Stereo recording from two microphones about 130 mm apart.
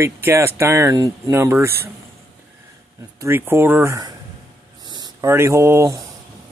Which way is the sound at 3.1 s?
15° right (ahead or behind).